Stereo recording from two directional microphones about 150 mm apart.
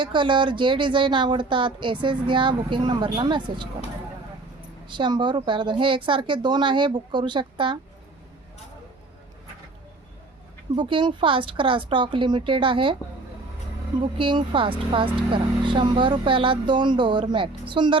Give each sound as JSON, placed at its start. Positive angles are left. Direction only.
{"t": 0.0, "sound": "speech", "side_deg": -30}
{"t": 4.9, "sound": "speech", "side_deg": -30}
{"t": 10.8, "sound": "speech", "side_deg": -35}
{"t": 14.2, "sound": "speech", "side_deg": -35}